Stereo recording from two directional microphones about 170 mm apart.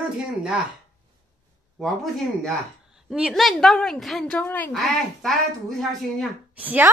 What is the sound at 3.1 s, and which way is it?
A woman's voice, centre (ahead or behind).